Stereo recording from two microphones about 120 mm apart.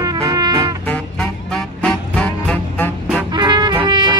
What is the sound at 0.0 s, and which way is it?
Music, 30° right (ahead or behind).